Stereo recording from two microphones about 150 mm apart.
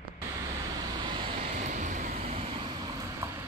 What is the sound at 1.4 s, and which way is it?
Vehicle, 50° right (ahead or behind).